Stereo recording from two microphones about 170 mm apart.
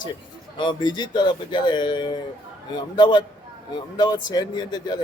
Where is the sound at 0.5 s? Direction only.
25° left (ahead or behind).